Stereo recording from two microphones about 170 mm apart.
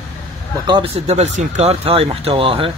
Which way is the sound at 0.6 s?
30° right (ahead or behind).